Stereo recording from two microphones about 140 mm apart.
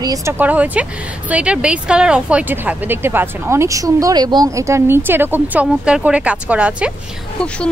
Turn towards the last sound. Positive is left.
turn(degrees=-10)  # may be behind; listen again after turning